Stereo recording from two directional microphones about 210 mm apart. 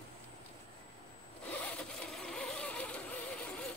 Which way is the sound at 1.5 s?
5° left (ahead or behind).